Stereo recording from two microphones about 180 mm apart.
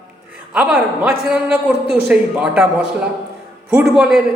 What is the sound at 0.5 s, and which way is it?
A man's voice, 5° right (ahead or behind).